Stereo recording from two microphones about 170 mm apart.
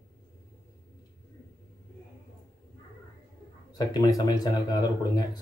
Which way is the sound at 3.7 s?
20° left (ahead or behind).